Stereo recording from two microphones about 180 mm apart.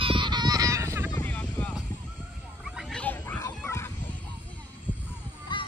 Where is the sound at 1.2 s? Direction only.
5° left (ahead or behind).